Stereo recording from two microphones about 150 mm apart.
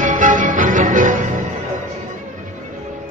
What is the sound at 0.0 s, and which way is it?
Music, 60° right (ahead or behind).